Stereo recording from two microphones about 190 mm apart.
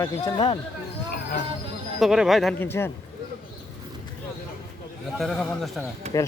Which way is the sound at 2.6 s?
10° left (ahead or behind).